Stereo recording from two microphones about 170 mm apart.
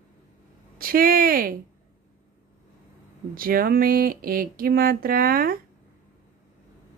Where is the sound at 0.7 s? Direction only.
60° right (ahead or behind).